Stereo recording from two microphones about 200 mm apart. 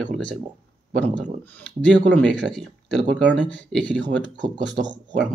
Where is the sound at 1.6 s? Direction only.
5° left (ahead or behind).